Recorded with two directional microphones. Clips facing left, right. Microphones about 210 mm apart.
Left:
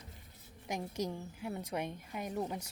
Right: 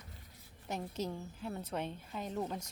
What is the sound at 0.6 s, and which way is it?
A woman's voice, 15° left (ahead or behind).